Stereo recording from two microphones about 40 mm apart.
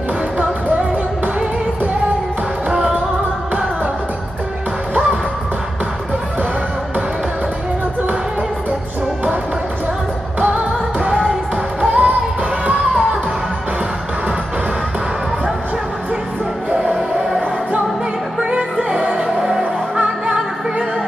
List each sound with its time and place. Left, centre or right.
10.4 s music: right
16.7 s music: centre
18.4 s music: right